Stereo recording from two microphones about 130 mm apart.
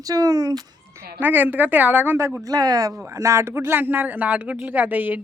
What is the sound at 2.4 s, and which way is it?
Speech, 30° right (ahead or behind).